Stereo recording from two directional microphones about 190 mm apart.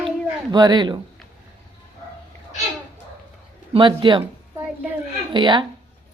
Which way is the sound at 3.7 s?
25° right (ahead or behind).